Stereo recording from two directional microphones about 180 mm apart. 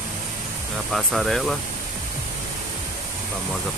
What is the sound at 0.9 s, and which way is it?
Speech, centre (ahead or behind).